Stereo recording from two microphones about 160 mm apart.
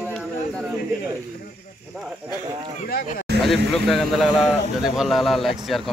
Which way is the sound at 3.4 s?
Centre (ahead or behind).